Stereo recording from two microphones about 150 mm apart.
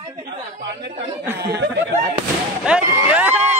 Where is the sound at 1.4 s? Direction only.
90° right.